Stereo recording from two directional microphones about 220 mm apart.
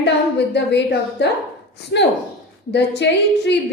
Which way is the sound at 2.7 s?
50° left (ahead or behind).